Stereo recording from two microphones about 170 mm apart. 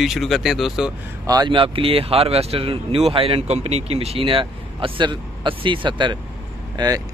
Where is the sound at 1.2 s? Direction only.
20° right (ahead or behind).